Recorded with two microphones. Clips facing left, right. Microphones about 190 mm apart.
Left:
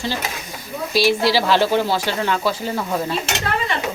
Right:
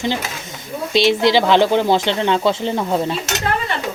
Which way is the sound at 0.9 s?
20° right (ahead or behind).